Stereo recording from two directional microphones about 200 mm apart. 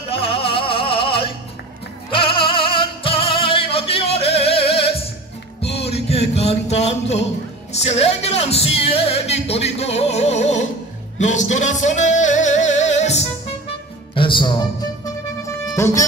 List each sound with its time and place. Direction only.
0.1 s music: 30° left (ahead or behind)